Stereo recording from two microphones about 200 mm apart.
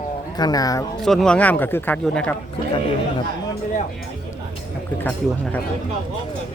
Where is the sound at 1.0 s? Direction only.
Centre (ahead or behind).